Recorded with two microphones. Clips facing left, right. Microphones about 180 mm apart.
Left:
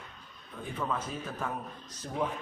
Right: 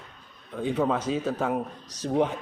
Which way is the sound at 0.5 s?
85° right.